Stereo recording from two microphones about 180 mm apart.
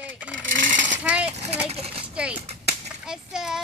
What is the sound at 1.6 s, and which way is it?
Speech, 35° right (ahead or behind).